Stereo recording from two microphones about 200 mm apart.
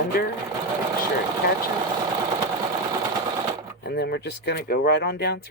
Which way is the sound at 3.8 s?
55° left (ahead or behind).